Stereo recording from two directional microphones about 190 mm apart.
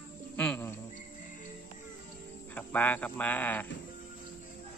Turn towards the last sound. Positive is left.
turn(degrees=10)  # may be behind; listen again after turning